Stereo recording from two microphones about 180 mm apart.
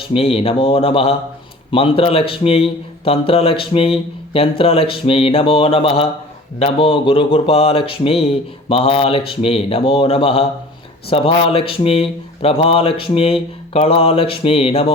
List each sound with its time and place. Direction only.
0.1 s a man's voice: 30° left (ahead or behind)